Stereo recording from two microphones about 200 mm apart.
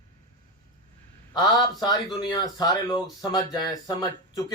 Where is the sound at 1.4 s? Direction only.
20° left (ahead or behind).